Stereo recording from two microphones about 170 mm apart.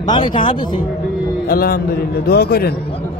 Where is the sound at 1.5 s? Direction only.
65° left (ahead or behind).